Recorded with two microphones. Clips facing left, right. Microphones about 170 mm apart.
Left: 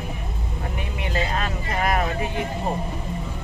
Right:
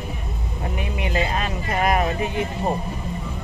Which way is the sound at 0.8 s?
15° right (ahead or behind).